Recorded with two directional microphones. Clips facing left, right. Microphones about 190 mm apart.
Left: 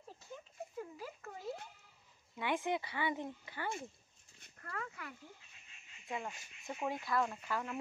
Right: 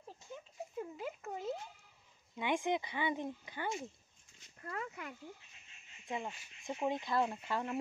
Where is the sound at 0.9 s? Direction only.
20° right (ahead or behind).